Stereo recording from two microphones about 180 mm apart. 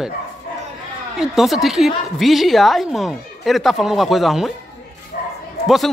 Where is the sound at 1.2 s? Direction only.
Centre (ahead or behind).